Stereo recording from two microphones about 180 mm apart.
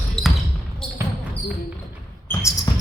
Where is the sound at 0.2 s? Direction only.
5° left (ahead or behind).